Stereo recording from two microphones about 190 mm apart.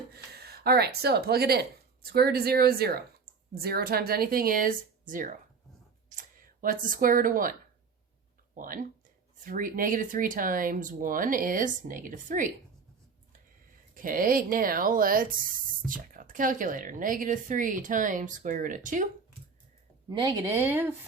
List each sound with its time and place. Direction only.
0.3 s speech: 55° right (ahead or behind)
8.5 s speech: 45° right (ahead or behind)
13.9 s speech: 45° right (ahead or behind)
20.1 s speech: 20° right (ahead or behind)